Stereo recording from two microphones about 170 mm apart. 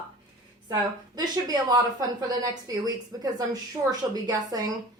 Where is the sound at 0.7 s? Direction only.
25° right (ahead or behind).